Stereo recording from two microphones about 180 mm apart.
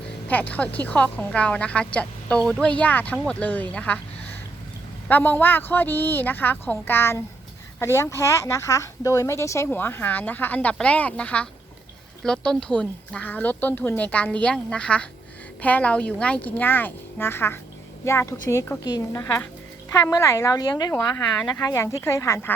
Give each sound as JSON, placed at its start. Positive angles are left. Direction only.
{"t": 0.3, "sound": "a woman's voice", "side_deg": 10}